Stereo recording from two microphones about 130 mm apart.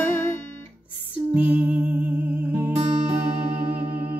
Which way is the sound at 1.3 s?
10° right (ahead or behind).